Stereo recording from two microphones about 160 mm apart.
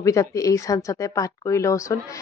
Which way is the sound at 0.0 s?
20° left (ahead or behind).